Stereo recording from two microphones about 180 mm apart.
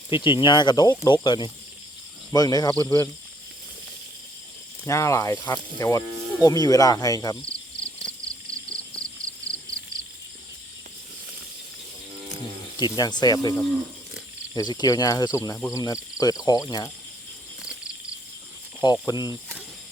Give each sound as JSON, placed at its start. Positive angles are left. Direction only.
{"t": 0.1, "sound": "speech", "side_deg": 25}
{"t": 4.9, "sound": "speech", "side_deg": 15}
{"t": 8.4, "sound": "cricket", "side_deg": -20}
{"t": 13.0, "sound": "speech", "side_deg": 20}
{"t": 18.8, "sound": "speech", "side_deg": 25}